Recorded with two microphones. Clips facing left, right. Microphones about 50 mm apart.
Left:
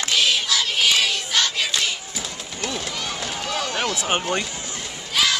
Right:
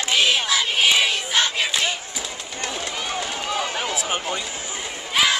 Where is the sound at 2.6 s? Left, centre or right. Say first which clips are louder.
Even; centre.